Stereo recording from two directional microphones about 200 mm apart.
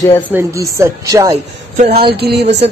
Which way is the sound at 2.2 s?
55° right (ahead or behind).